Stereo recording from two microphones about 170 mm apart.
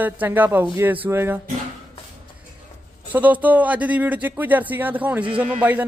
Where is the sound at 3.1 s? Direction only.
10° right (ahead or behind).